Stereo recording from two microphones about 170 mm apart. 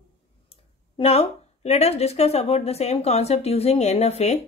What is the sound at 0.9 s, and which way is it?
A woman's voice, 35° left (ahead or behind).